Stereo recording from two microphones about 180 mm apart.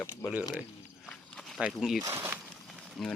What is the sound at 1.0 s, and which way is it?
Walk, centre (ahead or behind).